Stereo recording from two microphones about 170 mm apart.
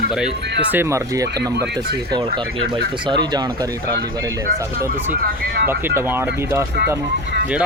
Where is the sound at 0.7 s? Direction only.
15° right (ahead or behind).